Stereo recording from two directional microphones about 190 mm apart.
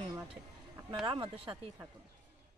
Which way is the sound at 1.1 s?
25° right (ahead or behind).